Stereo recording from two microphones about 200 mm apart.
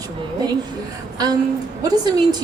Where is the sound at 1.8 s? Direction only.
20° right (ahead or behind).